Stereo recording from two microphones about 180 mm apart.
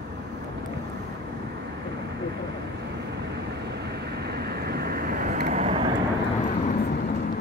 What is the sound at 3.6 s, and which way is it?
Vehicle, 65° right (ahead or behind).